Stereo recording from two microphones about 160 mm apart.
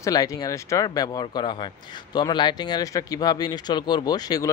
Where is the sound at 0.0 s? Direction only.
20° left (ahead or behind).